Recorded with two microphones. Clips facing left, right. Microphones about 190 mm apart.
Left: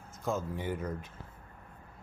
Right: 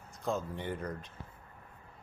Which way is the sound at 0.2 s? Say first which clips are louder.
Left 1 dB; 5° left (ahead or behind).